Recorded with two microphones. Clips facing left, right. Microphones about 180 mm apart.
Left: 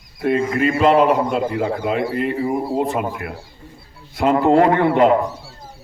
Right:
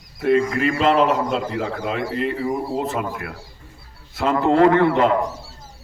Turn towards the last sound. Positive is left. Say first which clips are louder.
# left 2 dB
turn(degrees=25)  # may be behind; listen again after turning